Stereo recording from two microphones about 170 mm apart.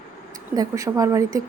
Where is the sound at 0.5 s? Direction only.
20° right (ahead or behind).